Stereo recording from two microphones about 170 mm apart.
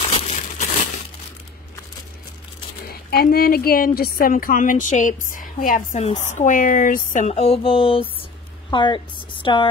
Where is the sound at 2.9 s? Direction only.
65° left (ahead or behind).